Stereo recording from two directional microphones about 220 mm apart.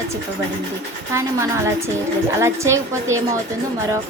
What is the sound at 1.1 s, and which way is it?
Speech, 15° right (ahead or behind).